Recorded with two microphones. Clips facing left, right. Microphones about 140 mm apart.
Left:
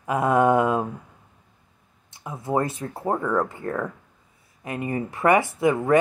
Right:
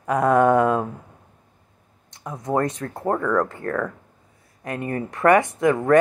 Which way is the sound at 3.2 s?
25° left (ahead or behind).